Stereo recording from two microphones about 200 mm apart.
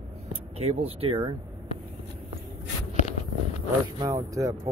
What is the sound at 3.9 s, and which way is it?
Speech, 15° right (ahead or behind).